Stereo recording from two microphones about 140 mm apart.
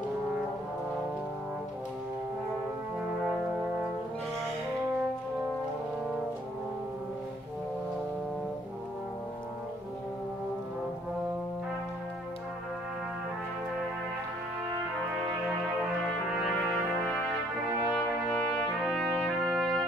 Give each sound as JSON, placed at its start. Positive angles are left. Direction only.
{"t": 16.3, "sound": "brass instrument", "side_deg": 0}
{"t": 18.8, "sound": "trumpet", "side_deg": 0}